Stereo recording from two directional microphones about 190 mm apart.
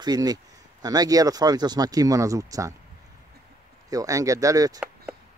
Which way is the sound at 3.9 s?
20° right (ahead or behind).